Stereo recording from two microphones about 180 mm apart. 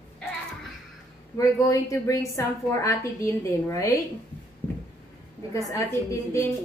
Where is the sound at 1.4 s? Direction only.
15° left (ahead or behind).